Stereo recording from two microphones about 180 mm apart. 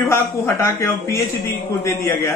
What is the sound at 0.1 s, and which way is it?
A man's voice, 15° left (ahead or behind).